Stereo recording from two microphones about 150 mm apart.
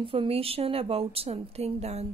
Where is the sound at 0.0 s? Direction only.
35° right (ahead or behind).